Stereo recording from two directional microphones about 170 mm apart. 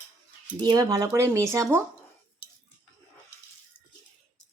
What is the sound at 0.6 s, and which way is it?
Speech, 25° right (ahead or behind).